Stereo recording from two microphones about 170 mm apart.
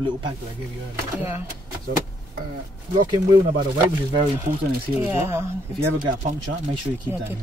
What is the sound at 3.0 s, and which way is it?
Speech, 25° right (ahead or behind).